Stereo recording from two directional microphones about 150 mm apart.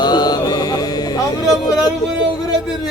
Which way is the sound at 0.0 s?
25° left (ahead or behind).